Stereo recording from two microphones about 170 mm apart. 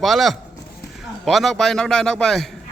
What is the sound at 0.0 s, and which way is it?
A man's voice, centre (ahead or behind).